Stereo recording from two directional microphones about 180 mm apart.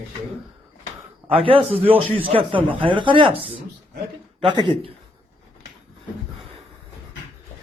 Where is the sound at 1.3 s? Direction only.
30° right (ahead or behind).